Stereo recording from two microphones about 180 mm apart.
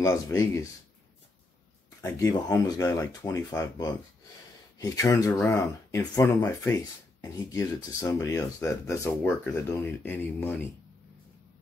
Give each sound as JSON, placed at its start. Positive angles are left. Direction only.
{"t": 0.0, "sound": "speech", "side_deg": 15}
{"t": 2.0, "sound": "speech", "side_deg": 15}